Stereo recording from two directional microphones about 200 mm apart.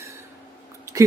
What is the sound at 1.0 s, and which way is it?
Speech, 15° right (ahead or behind).